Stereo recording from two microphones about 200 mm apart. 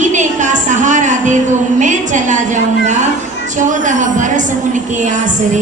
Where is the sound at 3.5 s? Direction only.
40° right (ahead or behind).